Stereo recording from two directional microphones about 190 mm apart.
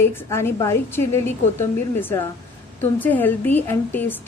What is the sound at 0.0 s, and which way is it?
A woman's voice, 10° left (ahead or behind).